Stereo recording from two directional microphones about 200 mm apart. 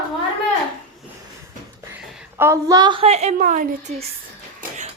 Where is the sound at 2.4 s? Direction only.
15° right (ahead or behind); by 4.0 s 40° right (ahead or behind).